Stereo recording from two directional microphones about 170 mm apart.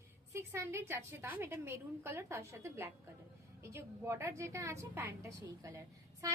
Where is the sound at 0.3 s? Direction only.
15° right (ahead or behind).